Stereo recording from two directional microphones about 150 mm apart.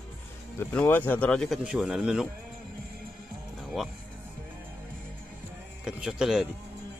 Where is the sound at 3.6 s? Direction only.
Centre (ahead or behind).